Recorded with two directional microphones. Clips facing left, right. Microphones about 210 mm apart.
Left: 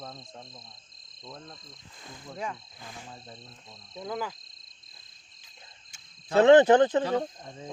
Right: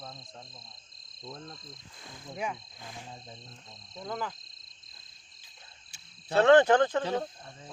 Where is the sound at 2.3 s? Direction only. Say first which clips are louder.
Right 1 dB; 15° right (ahead or behind).